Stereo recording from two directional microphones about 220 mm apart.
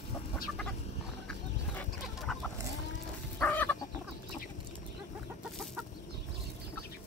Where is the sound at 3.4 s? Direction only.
10° left (ahead or behind).